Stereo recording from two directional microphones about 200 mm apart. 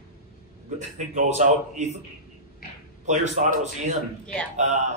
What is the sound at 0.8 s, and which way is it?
Speech, 35° right (ahead or behind).